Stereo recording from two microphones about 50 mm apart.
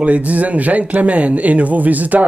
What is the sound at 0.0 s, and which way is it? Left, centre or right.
Speech, right.